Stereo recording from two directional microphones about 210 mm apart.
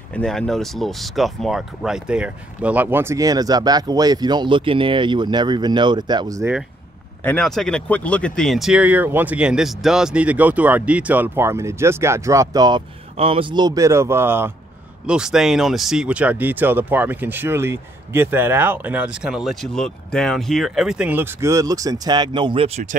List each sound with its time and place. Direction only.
0.1 s speech: 5° left (ahead or behind); by 6.5 s 15° right (ahead or behind)
7.2 s speech: 5° left (ahead or behind); by 22.9 s 30° right (ahead or behind)